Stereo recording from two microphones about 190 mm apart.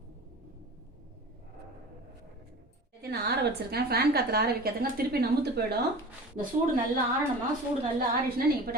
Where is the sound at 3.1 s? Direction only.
55° right (ahead or behind).